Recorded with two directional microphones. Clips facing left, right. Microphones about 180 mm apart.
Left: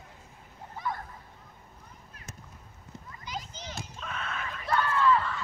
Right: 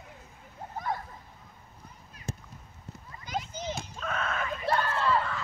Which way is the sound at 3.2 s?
50° right (ahead or behind).